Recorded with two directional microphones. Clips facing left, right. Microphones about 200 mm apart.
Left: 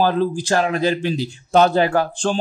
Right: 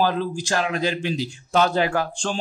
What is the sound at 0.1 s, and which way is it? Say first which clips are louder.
A man's voice: left 6 dB; 35° left (ahead or behind).